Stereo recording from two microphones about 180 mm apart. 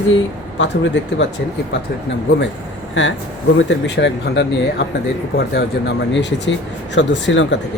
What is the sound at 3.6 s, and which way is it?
Speech, 80° left.